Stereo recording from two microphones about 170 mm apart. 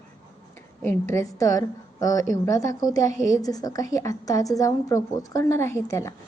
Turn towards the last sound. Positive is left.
turn(degrees=15)  # may be behind; listen again after turning